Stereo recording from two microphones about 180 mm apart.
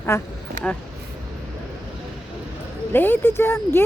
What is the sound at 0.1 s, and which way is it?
Speech, 15° left (ahead or behind).